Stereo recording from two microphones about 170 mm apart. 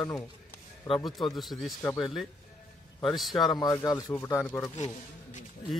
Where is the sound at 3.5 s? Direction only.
20° left (ahead or behind).